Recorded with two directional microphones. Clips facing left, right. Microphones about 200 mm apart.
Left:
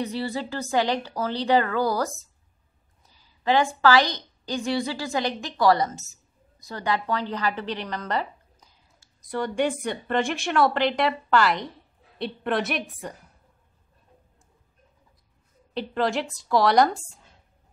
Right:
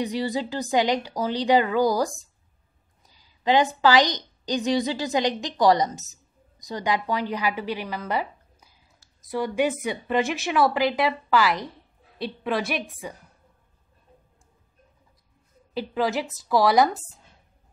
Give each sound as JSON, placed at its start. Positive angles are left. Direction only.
{"t": 0.0, "sound": "a woman's voice", "side_deg": -15}
{"t": 15.7, "sound": "a woman's voice", "side_deg": -5}